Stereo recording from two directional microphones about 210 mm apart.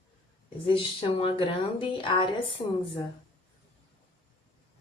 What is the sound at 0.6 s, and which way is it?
A woman's voice, 25° left (ahead or behind).